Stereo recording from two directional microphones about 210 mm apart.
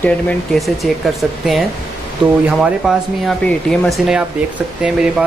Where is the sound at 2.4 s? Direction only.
5° right (ahead or behind).